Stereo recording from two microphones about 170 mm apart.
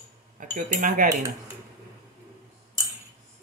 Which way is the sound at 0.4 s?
50° right (ahead or behind).